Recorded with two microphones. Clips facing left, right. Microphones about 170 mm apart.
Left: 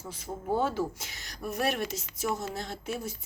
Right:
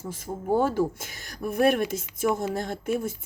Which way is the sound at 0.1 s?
50° right (ahead or behind).